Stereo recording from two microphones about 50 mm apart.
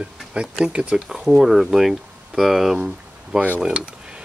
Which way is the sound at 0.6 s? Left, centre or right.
Centre.